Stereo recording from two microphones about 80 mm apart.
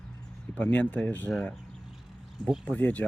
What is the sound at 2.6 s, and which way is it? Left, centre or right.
Speech, centre.